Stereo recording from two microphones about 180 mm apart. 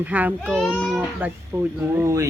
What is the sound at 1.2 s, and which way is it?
A woman's voice, 10° right (ahead or behind).